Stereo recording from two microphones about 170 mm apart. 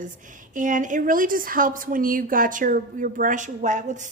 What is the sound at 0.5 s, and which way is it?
A woman's voice, 50° right (ahead or behind).